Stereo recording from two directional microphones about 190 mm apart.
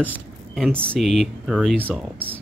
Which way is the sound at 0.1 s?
10° right (ahead or behind).